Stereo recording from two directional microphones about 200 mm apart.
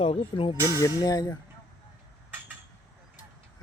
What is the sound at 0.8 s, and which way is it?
Speech, 15° left (ahead or behind).